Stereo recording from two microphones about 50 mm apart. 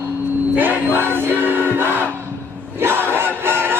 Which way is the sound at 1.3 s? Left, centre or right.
Right.